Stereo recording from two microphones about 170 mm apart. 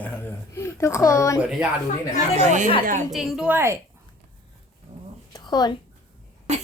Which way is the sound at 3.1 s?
Centre (ahead or behind).